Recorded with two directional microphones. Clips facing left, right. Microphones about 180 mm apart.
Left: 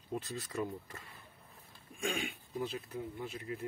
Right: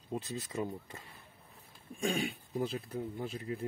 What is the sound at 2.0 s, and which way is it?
Speech, 35° right (ahead or behind).